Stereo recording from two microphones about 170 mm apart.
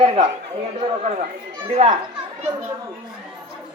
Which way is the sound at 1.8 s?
40° right (ahead or behind).